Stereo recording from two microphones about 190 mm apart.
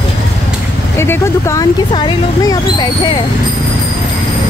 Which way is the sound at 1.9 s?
25° left (ahead or behind).